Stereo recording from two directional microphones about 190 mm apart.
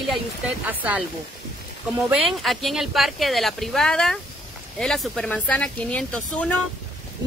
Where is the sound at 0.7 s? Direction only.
10° right (ahead or behind).